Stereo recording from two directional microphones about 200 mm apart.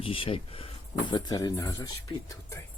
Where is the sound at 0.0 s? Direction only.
25° left (ahead or behind).